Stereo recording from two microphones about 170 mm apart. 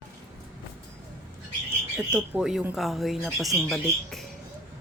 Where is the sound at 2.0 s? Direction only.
5° right (ahead or behind).